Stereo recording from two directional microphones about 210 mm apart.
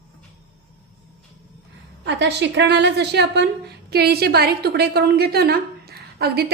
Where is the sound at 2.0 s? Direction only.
55° right (ahead or behind).